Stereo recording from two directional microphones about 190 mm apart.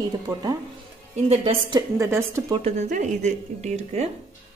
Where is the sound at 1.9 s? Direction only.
15° right (ahead or behind).